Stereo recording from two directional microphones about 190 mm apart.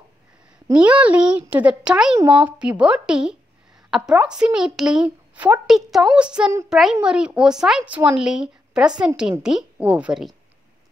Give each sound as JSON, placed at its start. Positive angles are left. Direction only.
{"t": 0.7, "sound": "a woman's voice", "side_deg": -5}